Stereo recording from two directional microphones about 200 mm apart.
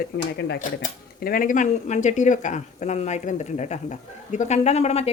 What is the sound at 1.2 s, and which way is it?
Speech, 45° left (ahead or behind).